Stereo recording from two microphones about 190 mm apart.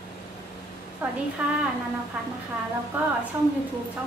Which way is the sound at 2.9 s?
10° right (ahead or behind).